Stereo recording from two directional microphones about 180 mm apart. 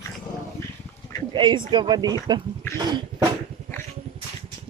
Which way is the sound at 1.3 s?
25° right (ahead or behind).